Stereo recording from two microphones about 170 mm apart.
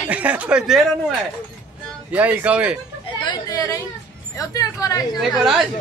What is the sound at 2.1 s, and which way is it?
Speech, 10° right (ahead or behind).